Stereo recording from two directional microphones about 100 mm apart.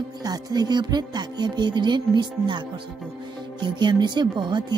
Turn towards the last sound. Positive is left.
turn(degrees=-50)  # may be behind; listen again after turning